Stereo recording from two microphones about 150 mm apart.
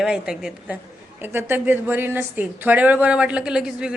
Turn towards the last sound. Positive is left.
turn(degrees=-5)  # may be behind; listen again after turning